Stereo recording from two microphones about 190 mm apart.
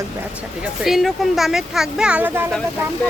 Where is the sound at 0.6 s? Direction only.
Centre (ahead or behind).